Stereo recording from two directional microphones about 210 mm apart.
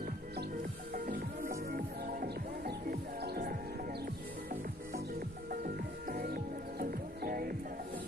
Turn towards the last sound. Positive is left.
turn(degrees=-45)  # may be behind; listen again after turning